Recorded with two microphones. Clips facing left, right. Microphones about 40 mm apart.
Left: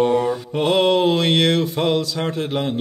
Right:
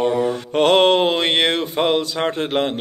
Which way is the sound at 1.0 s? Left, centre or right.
Right.